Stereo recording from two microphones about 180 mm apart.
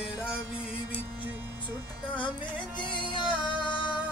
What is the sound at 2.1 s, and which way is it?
Music, 25° left (ahead or behind).